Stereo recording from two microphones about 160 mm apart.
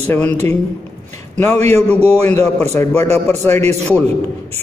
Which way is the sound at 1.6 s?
10° left (ahead or behind).